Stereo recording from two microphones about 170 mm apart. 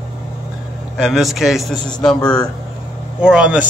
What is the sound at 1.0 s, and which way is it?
Speech, centre (ahead or behind).